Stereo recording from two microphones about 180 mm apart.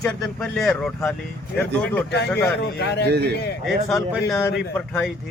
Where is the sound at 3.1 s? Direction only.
65° right (ahead or behind).